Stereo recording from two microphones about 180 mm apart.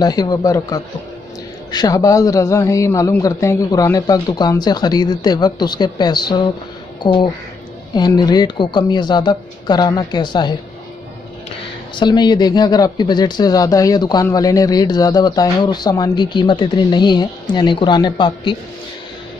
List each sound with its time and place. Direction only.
0.0 s speech: 20° left (ahead or behind)
11.9 s speech: 25° left (ahead or behind)